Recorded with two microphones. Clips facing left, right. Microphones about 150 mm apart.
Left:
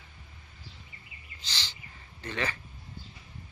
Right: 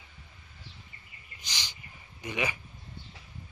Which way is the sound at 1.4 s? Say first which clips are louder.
Left 1 dB; 15° right (ahead or behind).